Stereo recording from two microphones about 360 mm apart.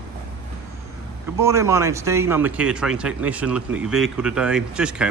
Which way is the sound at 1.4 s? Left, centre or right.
Centre.